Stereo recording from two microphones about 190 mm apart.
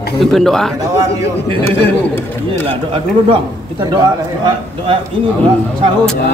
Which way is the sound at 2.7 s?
25° right (ahead or behind).